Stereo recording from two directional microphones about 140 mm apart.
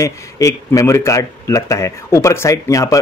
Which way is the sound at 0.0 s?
20° left (ahead or behind).